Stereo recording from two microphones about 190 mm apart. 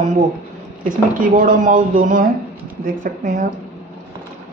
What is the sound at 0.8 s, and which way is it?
A woman's voice, 45° right (ahead or behind).